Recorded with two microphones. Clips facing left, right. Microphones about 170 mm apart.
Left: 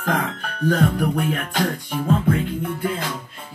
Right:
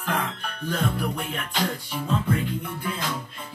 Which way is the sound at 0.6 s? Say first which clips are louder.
Left 8 dB; 60° left (ahead or behind).